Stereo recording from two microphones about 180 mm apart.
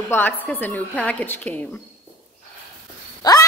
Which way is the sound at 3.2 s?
20° left (ahead or behind).